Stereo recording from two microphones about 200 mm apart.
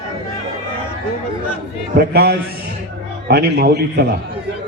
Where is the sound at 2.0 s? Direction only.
50° right (ahead or behind).